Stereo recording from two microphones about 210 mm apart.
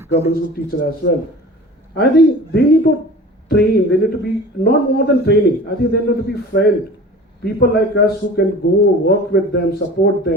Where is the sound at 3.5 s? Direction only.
50° left (ahead or behind).